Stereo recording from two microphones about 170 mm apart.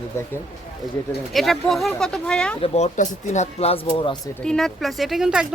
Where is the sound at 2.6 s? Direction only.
40° left (ahead or behind).